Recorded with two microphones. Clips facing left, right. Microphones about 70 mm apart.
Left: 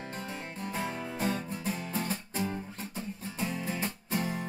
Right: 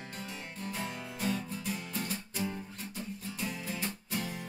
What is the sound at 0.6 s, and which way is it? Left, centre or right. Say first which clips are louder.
Music: left 4 dB; left.